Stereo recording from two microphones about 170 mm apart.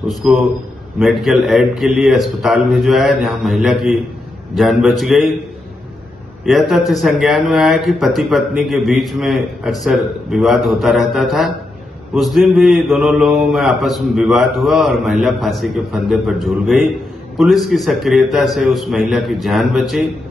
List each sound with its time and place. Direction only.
0.1 s a man's voice: centre (ahead or behind)
6.4 s a man's voice: centre (ahead or behind)